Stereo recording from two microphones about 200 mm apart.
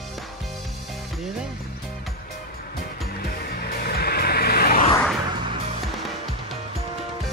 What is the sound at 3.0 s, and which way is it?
Music, 50° left (ahead or behind).